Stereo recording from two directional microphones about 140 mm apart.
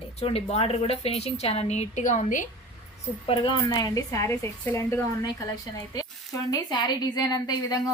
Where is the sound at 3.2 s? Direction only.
35° left (ahead or behind).